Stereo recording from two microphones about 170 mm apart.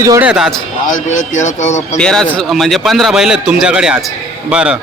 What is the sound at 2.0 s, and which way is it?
A man's voice, 5° left (ahead or behind).